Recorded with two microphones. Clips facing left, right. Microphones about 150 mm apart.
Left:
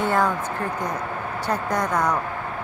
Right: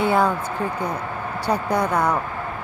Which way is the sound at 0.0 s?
10° right (ahead or behind).